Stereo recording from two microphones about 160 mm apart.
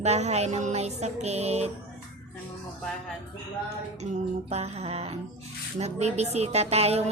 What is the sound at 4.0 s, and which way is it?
Music, 40° right (ahead or behind).